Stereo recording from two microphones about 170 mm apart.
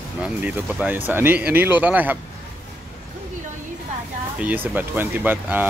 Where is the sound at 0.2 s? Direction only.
10° right (ahead or behind).